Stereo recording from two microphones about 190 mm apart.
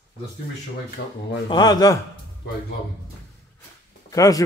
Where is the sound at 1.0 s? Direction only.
55° left (ahead or behind).